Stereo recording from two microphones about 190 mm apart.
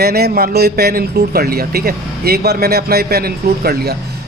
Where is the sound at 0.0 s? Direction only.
55° right (ahead or behind).